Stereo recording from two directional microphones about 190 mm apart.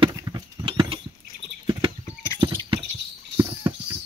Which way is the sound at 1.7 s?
25° right (ahead or behind).